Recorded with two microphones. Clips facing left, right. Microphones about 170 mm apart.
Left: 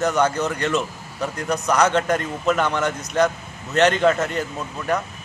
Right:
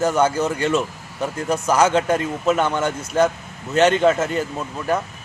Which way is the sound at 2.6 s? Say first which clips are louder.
Right 1 dB; 30° right (ahead or behind).